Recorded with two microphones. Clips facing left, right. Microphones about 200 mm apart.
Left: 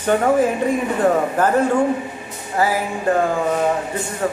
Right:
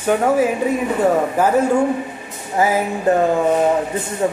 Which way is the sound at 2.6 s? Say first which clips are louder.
Right 2 dB; 20° right (ahead or behind).